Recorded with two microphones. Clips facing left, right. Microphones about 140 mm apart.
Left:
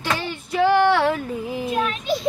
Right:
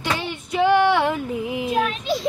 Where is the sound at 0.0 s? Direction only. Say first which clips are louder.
Even; 15° right (ahead or behind).